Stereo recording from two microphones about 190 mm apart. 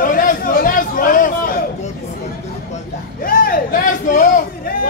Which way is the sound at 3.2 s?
45° left (ahead or behind).